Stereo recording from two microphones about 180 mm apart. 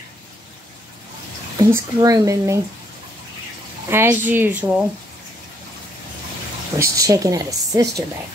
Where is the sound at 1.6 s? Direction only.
20° right (ahead or behind).